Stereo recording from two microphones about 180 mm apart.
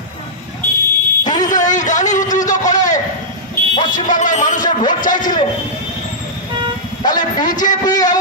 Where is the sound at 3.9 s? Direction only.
45° left (ahead or behind).